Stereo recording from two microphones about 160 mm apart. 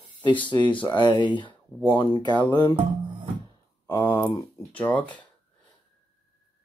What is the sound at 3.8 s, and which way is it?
Speech, 20° left (ahead or behind).